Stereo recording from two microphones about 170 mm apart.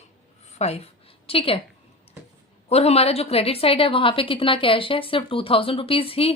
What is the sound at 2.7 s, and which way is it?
A woman's voice, 35° left (ahead or behind).